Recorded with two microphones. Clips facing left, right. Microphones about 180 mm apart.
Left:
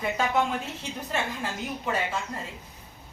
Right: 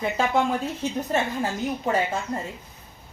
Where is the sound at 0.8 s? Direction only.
40° right (ahead or behind).